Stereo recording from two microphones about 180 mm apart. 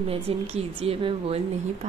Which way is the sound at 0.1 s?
35° right (ahead or behind).